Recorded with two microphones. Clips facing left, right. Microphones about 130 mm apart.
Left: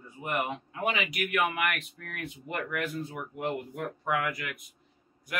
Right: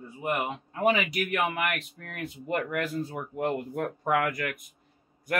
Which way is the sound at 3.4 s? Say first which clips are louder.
Right 4 dB; 50° right (ahead or behind).